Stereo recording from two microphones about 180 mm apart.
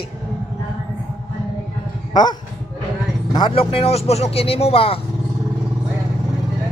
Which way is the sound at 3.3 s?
30° left (ahead or behind).